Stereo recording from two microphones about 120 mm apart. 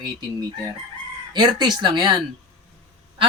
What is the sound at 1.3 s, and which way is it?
Speech, 35° right (ahead or behind).